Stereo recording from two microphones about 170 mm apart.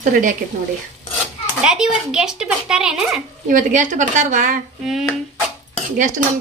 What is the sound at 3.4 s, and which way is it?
A woman's voice, 50° right (ahead or behind).